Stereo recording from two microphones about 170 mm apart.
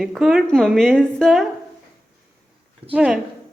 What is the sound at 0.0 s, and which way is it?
A woman's voice, centre (ahead or behind).